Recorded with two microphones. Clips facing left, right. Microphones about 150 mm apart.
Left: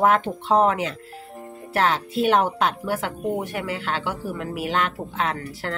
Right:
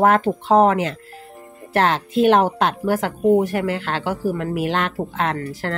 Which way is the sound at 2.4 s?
40° right (ahead or behind).